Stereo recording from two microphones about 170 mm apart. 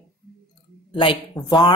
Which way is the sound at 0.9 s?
30° left (ahead or behind).